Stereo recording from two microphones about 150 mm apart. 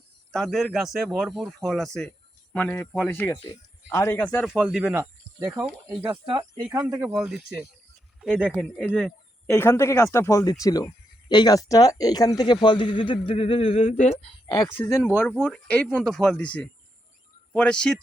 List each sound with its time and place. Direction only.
0.3 s speech: centre (ahead or behind)
4.5 s a man's voice: centre (ahead or behind)
4.9 s a sound: 15° right (ahead or behind)
7.0 s a man's voice: 5° right (ahead or behind)
9.5 s speech: 15° left (ahead or behind); by 14.5 s 45° left (ahead or behind)
14.5 s speech: 20° left (ahead or behind)
15.2 s a man's voice: 5° left (ahead or behind)